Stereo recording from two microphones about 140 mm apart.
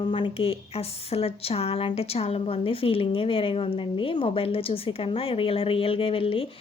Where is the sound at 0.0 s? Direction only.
40° left (ahead or behind).